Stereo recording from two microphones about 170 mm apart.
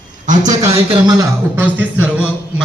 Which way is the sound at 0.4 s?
20° right (ahead or behind).